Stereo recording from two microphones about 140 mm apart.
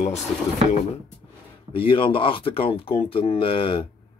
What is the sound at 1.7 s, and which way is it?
Speech, 40° left (ahead or behind).